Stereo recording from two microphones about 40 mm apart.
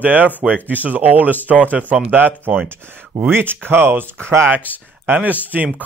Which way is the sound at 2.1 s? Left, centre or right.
Right.